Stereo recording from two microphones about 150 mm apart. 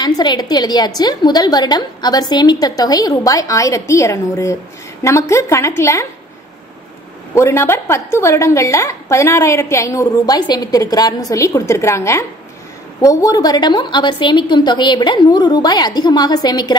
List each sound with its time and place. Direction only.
0.0 s a woman's voice: 30° left (ahead or behind)
7.3 s a woman's voice: 20° left (ahead or behind)